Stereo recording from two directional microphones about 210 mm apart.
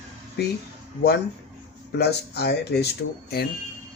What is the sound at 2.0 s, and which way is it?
Speech, 50° left (ahead or behind).